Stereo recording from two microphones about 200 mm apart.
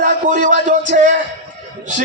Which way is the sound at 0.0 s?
40° right (ahead or behind).